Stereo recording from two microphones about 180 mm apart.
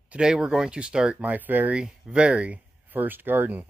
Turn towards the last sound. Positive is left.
turn(degrees=-10)  # may be behind; listen again after turning